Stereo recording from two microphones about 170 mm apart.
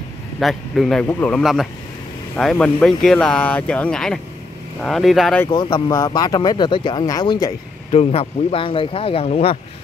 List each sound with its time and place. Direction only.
0.4 s speech: centre (ahead or behind)
1.4 s speech: centre (ahead or behind)
5.5 s speech: 25° left (ahead or behind)
7.9 s speech: 35° left (ahead or behind)